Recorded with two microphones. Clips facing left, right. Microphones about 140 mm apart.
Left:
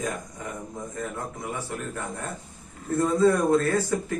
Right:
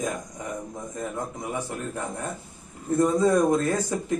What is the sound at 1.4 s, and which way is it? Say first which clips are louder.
A man's voice: right 2 dB; 20° right (ahead or behind).